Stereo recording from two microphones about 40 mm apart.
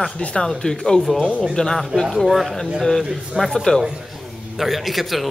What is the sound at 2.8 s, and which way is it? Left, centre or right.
Speech, centre.